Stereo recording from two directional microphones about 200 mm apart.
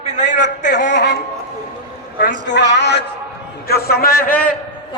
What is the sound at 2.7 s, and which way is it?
A woman's voice, 60° left (ahead or behind).